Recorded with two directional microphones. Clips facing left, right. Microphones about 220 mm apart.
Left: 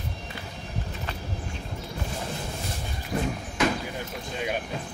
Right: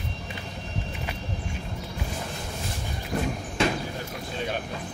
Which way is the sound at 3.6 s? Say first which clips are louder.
Even; 30° right (ahead or behind).